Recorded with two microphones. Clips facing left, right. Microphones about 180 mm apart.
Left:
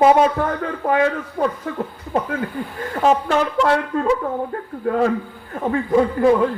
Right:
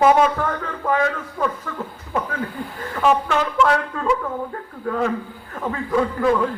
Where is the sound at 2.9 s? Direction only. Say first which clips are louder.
Left 2 dB; 35° left (ahead or behind).